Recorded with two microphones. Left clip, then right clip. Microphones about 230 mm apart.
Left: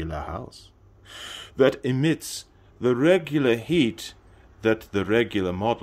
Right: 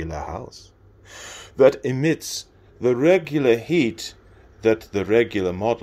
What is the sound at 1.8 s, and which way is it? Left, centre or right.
Speech, centre.